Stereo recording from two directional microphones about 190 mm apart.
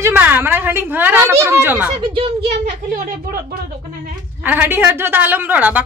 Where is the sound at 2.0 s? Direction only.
30° right (ahead or behind).